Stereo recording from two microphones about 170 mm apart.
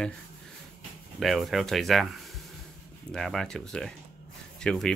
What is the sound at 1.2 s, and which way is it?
Speech, centre (ahead or behind).